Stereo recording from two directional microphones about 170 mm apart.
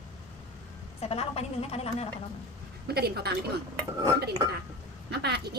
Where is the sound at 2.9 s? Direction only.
70° right (ahead or behind).